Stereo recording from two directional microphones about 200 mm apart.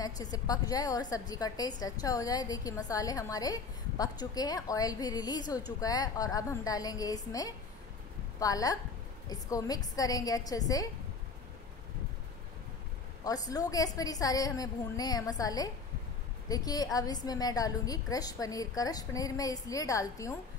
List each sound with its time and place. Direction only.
0.0 s a woman's voice: 20° left (ahead or behind)
13.2 s a woman's voice: 20° left (ahead or behind)